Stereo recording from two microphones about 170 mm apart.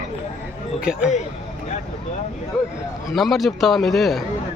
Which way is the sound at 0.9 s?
5° right (ahead or behind).